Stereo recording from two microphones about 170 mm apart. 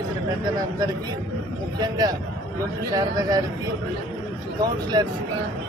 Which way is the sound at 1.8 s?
25° right (ahead or behind).